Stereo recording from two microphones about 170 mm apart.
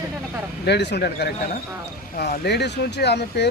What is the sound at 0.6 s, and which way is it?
Speech, 80° left.